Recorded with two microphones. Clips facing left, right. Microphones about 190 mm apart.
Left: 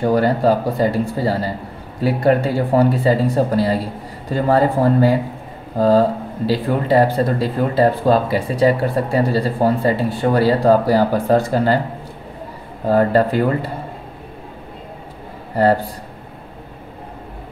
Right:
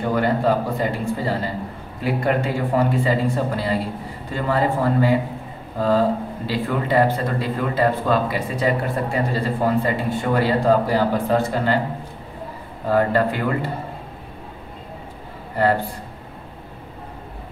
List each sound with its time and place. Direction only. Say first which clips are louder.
0.1 s speech: left 2 dB; 35° left (ahead or behind)
12.8 s speech: left 4 dB; 40° left (ahead or behind)